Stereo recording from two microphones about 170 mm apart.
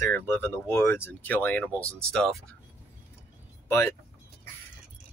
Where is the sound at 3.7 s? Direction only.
15° left (ahead or behind).